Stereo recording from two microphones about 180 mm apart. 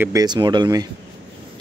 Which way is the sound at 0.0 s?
20° right (ahead or behind).